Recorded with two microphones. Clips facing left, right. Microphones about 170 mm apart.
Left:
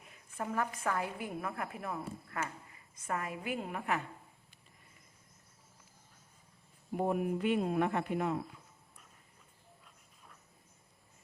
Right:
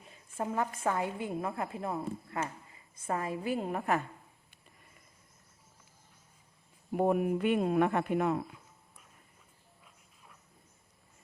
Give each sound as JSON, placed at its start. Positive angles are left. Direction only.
{"t": 0.0, "sound": "a sound", "side_deg": -25}
{"t": 0.8, "sound": "a woman's voice", "side_deg": -25}
{"t": 6.9, "sound": "speech", "side_deg": -65}